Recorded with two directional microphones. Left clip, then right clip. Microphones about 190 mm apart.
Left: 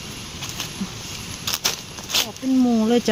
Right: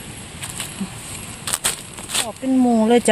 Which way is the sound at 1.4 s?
15° right (ahead or behind).